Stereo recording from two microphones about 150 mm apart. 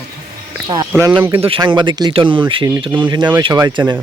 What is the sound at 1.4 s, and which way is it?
Speech, 35° right (ahead or behind).